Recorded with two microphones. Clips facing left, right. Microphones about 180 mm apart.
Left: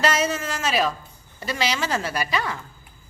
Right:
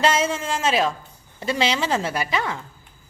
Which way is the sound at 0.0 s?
25° right (ahead or behind).